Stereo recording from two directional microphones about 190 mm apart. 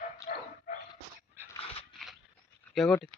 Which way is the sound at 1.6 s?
30° left (ahead or behind).